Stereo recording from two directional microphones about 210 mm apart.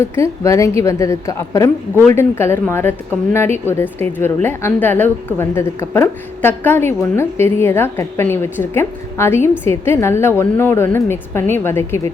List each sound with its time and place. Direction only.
0.0 s a woman's voice: 15° left (ahead or behind)